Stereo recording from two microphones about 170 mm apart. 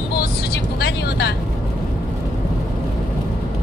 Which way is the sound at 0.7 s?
70° left (ahead or behind).